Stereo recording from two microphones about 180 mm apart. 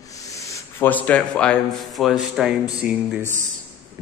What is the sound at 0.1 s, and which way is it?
A man's voice, 20° left (ahead or behind).